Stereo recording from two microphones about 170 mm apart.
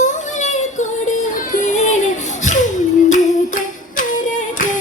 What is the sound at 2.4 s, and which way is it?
Humming, 45° left (ahead or behind).